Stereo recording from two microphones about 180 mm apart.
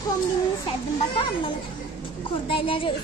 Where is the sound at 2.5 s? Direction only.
30° left (ahead or behind).